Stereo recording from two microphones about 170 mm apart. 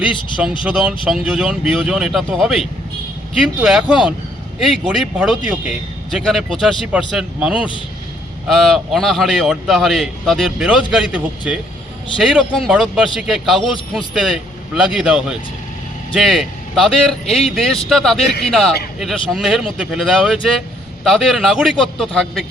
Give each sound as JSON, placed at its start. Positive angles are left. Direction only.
{"t": 0.1, "sound": "speech", "side_deg": 30}
{"t": 0.6, "sound": "a man's voice", "side_deg": -5}